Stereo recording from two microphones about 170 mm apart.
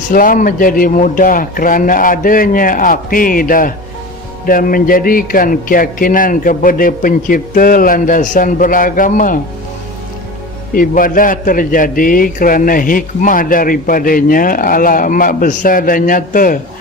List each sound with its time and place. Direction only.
0.1 s a man's voice: 55° left (ahead or behind)
10.8 s a man's voice: 55° left (ahead or behind)